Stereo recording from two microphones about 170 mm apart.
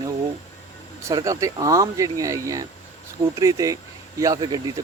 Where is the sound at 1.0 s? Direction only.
20° right (ahead or behind).